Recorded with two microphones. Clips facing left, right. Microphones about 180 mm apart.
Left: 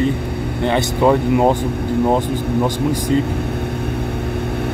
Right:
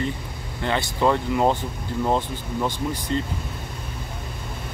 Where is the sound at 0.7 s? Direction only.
15° left (ahead or behind).